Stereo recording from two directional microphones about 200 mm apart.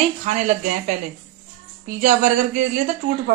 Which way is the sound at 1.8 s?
40° right (ahead or behind).